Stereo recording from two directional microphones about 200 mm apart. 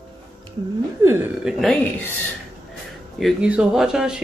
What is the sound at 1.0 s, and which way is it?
Speech, 10° right (ahead or behind).